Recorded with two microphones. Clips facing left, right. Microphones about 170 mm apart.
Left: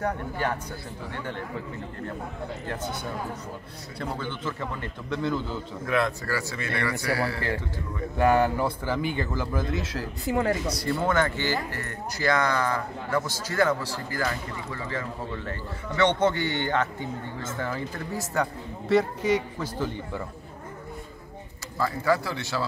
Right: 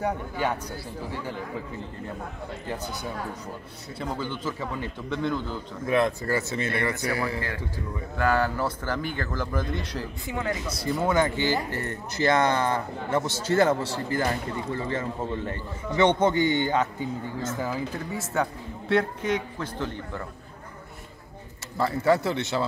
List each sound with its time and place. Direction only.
1.1 s a man's voice: 5° right (ahead or behind)
4.0 s a man's voice: 5° right (ahead or behind)
5.9 s speech: 20° right (ahead or behind)
8.2 s speech: 20° left (ahead or behind); by 10.0 s 5° left (ahead or behind)
10.3 s speech: 45° left (ahead or behind)
10.7 s a man's voice: centre (ahead or behind)
11.1 s a man's voice: 15° right (ahead or behind); by 20.2 s 5° left (ahead or behind)
21.7 s speech: 25° right (ahead or behind)